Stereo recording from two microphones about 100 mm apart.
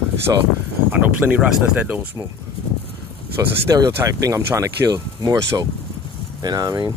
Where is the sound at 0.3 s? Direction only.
30° right (ahead or behind).